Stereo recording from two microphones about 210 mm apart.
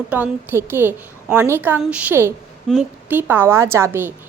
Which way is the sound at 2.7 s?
5° left (ahead or behind).